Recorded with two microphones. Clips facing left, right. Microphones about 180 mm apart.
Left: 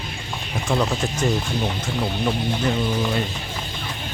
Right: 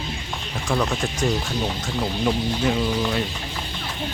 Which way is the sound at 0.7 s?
Centre (ahead or behind).